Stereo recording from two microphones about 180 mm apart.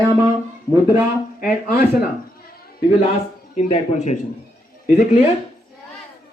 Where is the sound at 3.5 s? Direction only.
40° left (ahead or behind).